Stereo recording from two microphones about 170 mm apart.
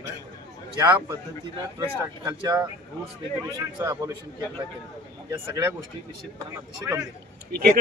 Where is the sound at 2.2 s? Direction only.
15° right (ahead or behind).